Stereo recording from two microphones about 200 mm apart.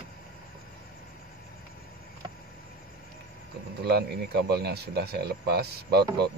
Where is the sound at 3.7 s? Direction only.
55° right (ahead or behind).